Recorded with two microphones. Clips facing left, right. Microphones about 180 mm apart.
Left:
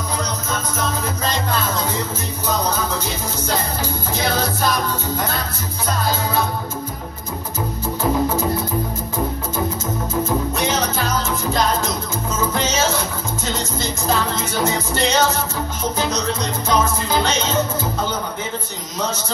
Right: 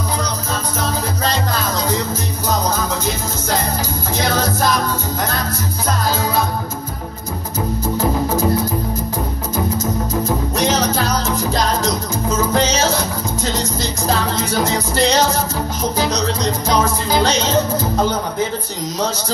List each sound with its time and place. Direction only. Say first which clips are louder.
0.2 s music: right 2 dB; 35° right (ahead or behind)
4.2 s music: right 3 dB; 40° right (ahead or behind)
10.5 s music: right 4 dB; 40° right (ahead or behind)
16.6 s music: even; 35° right (ahead or behind)